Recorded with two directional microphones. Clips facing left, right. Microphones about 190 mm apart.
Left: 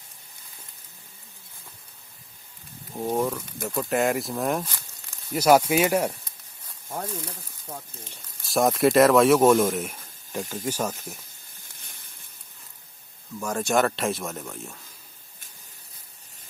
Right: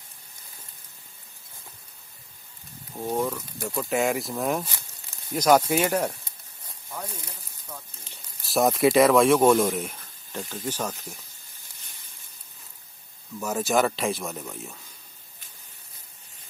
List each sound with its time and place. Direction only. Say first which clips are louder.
3.0 s speech: left 2 dB; 10° left (ahead or behind)
7.9 s speech: left 6 dB; 50° left (ahead or behind)
8.4 s speech: even; centre (ahead or behind)
13.4 s speech: even; 5° right (ahead or behind)